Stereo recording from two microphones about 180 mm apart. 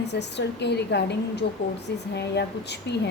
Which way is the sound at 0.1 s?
70° left (ahead or behind).